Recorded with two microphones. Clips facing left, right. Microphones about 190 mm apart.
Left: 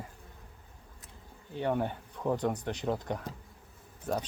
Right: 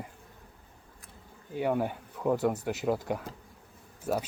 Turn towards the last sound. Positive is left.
turn(degrees=-10)  # may be behind; listen again after turning